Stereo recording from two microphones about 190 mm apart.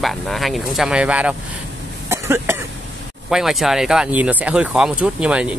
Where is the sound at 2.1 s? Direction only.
15° right (ahead or behind).